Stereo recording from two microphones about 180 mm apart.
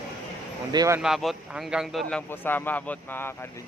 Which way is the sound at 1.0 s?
Centre (ahead or behind).